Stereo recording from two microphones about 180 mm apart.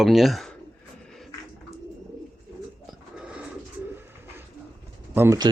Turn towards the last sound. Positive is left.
turn(degrees=-15)  # may be behind; listen again after turning